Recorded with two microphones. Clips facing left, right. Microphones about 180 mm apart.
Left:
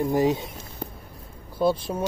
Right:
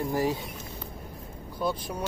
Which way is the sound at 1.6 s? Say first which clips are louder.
Left 7 dB; 25° left (ahead or behind).